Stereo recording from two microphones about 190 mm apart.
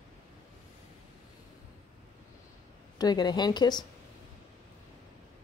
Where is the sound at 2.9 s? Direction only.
20° left (ahead or behind).